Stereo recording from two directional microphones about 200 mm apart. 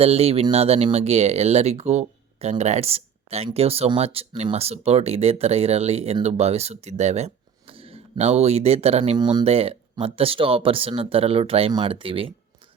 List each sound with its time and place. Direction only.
0.0 s speech: 30° right (ahead or behind)